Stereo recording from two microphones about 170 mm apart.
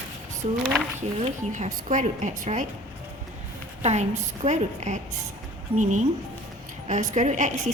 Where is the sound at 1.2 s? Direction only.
45° right (ahead or behind).